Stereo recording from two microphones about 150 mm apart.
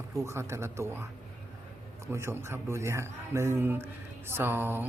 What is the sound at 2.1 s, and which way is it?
Speech, 20° right (ahead or behind).